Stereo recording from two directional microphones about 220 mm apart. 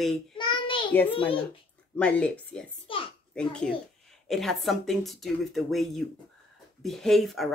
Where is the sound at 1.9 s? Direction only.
5° left (ahead or behind).